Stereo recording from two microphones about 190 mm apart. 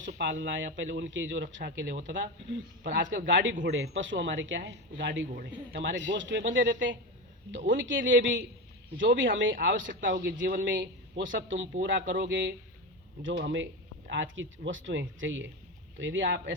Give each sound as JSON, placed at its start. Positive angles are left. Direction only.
{"t": 0.2, "sound": "a man's voice", "side_deg": -70}
{"t": 5.3, "sound": "a man's voice", "side_deg": -55}